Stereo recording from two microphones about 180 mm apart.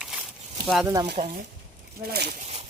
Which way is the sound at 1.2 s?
50° right (ahead or behind).